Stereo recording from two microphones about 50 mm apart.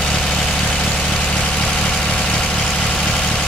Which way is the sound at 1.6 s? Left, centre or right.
Centre.